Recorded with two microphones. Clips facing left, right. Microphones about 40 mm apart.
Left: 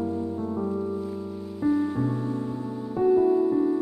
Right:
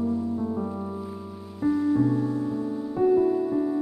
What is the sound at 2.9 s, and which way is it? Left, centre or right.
Music, centre.